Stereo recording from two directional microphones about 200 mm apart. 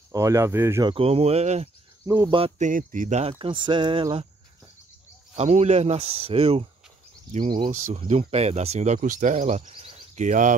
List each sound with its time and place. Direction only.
0.1 s speech: 15° right (ahead or behind)
0.9 s speech: 30° right (ahead or behind)
2.0 s speech: 10° right (ahead or behind)
2.3 s speech: 30° right (ahead or behind)
2.7 s speech: 40° right (ahead or behind); by 4.3 s 25° right (ahead or behind)
5.3 s speech: 35° right (ahead or behind)